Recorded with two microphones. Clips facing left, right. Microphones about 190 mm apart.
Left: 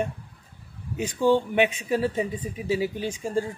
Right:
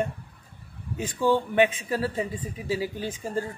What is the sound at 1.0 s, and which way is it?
A man's voice, 15° left (ahead or behind).